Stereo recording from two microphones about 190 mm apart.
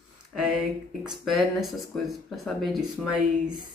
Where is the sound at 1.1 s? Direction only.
Centre (ahead or behind).